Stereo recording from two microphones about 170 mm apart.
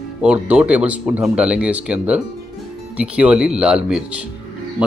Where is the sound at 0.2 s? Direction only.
10° right (ahead or behind).